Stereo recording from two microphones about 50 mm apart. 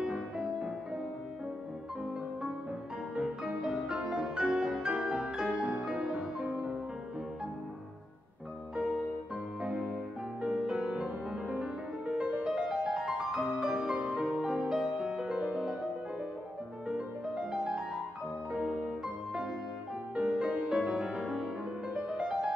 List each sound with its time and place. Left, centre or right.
0.0 s music: centre
3.2 s music: centre
9.6 s music: centre
14.2 s music: centre
16.8 s music: centre
20.2 s music: centre